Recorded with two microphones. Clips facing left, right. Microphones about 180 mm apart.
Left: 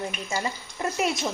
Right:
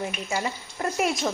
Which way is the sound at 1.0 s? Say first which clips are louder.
Right 1 dB; centre (ahead or behind).